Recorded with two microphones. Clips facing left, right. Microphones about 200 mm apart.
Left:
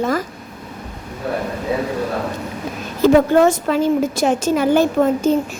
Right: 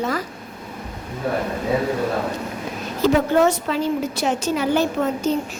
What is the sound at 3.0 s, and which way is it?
A woman's voice, 50° left (ahead or behind).